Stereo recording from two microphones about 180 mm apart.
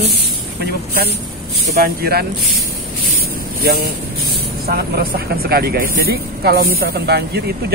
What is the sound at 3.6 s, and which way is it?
Speech, 60° right (ahead or behind).